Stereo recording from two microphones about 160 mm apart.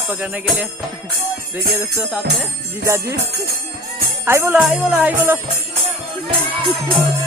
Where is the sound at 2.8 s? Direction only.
20° right (ahead or behind).